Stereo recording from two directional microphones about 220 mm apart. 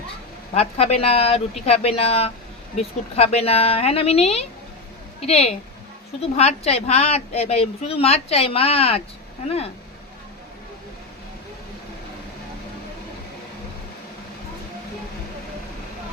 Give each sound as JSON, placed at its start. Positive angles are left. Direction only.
{"t": 0.5, "sound": "a woman's voice", "side_deg": 30}